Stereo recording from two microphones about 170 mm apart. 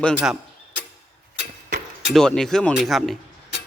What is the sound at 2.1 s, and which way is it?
Speech, 5° left (ahead or behind).